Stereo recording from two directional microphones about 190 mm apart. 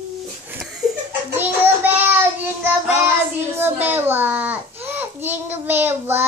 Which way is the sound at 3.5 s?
10° right (ahead or behind).